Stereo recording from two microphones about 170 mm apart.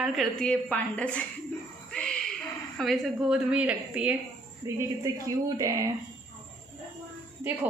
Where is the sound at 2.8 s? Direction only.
Centre (ahead or behind).